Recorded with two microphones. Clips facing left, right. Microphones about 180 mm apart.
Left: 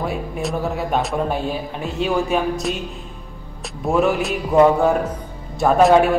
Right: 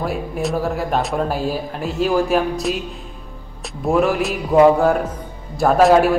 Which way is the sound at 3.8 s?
Centre (ahead or behind).